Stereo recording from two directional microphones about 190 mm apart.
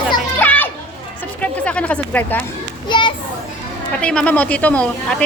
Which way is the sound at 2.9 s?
25° left (ahead or behind).